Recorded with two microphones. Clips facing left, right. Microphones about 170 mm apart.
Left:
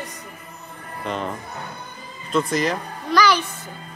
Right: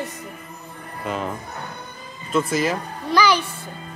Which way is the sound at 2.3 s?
5° right (ahead or behind).